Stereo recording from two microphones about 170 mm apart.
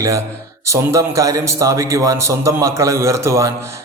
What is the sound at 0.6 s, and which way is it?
A man's voice, 15° right (ahead or behind).